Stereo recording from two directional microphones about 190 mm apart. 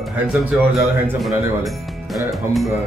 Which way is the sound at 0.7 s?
Centre (ahead or behind).